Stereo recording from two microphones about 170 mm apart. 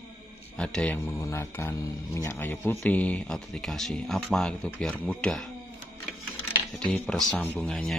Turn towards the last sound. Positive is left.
turn(degrees=5)  # may be behind; listen again after turning